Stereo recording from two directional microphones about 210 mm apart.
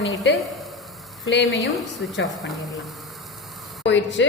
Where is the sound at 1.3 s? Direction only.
55° left (ahead or behind).